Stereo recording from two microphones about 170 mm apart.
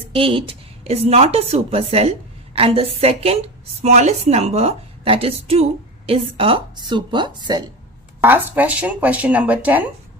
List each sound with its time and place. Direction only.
0.1 s a woman's voice: 30° right (ahead or behind)
8.2 s speech: 10° right (ahead or behind)